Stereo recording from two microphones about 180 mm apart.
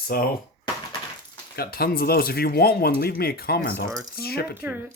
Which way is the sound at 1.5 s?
55° left (ahead or behind).